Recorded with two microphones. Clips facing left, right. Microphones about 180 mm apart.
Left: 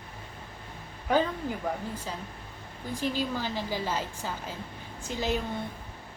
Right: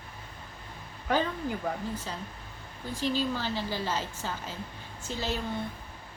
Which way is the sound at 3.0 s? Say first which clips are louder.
Right 1 dB; 15° left (ahead or behind).